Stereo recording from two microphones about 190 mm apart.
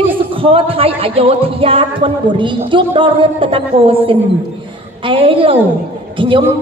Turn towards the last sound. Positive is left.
turn(degrees=-25)  # may be behind; listen again after turning